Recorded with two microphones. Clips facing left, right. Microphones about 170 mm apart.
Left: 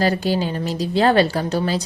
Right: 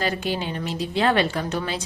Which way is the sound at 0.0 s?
35° left (ahead or behind).